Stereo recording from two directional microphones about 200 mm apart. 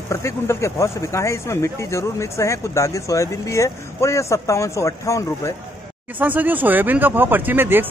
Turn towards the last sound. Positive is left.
turn(degrees=-10)  # may be behind; listen again after turning